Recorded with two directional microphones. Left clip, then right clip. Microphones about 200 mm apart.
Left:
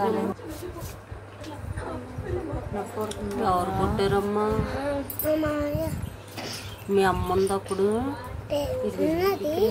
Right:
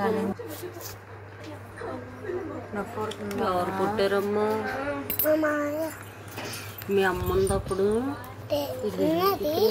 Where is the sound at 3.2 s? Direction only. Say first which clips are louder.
Left 2 dB; 5° left (ahead or behind).